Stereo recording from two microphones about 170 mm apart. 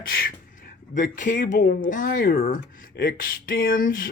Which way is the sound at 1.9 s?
55° left (ahead or behind).